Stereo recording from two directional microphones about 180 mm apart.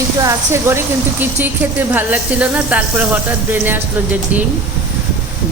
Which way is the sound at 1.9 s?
10° right (ahead or behind).